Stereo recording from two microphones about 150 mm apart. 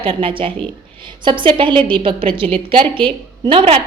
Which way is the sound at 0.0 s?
35° right (ahead or behind).